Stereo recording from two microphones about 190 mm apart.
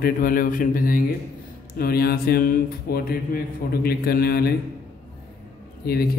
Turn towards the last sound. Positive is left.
turn(degrees=55)  # may be behind; listen again after turning